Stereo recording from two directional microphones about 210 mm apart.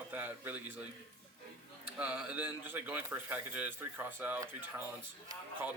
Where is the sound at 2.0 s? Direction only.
5° right (ahead or behind).